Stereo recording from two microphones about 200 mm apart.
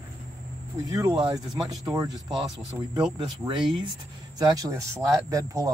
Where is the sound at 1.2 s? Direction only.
20° right (ahead or behind).